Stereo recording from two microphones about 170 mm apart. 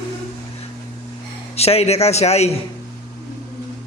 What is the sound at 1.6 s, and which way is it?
Speech, 35° left (ahead or behind).